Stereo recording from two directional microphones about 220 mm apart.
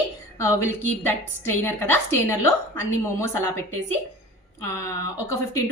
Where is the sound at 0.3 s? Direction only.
10° left (ahead or behind).